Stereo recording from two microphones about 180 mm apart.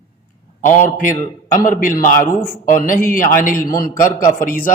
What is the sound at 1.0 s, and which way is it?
Speech, 45° left (ahead or behind).